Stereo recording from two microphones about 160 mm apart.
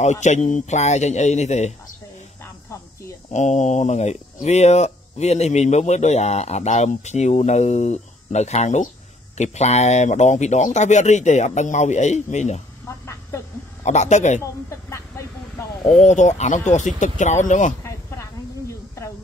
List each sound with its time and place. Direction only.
0.0 s speech: 45° left (ahead or behind)
3.3 s speech: 45° left (ahead or behind)
12.8 s vehicle: 15° left (ahead or behind)
13.8 s speech: 45° left (ahead or behind)
14.7 s vehicle: 15° left (ahead or behind)
15.8 s speech: 45° left (ahead or behind)
17.8 s hiss: 20° left (ahead or behind)